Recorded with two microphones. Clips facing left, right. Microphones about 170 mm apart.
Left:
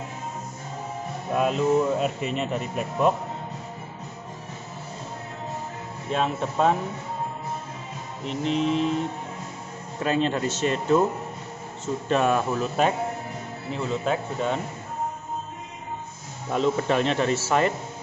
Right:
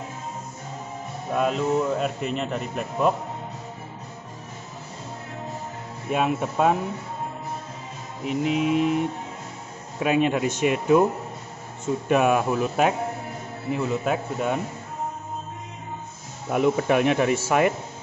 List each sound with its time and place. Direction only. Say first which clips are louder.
1.3 s a man's voice: left 1 dB; centre (ahead or behind)
6.0 s speech: right 2 dB; 10° right (ahead or behind)
8.3 s speech: right 2 dB; 10° right (ahead or behind)
16.4 s speech: right 2 dB; 10° right (ahead or behind)